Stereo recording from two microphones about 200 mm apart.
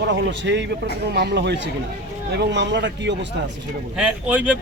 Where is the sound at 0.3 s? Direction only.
60° right (ahead or behind).